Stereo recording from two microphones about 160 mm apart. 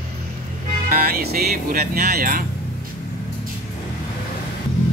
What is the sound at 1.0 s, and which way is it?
Speech, 75° right (ahead or behind).